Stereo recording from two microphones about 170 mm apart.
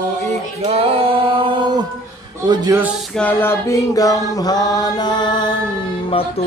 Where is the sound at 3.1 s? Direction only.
10° left (ahead or behind); by 5.5 s 25° left (ahead or behind).